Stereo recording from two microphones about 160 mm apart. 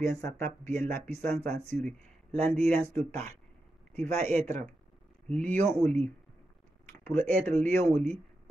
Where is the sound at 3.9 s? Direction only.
45° right (ahead or behind).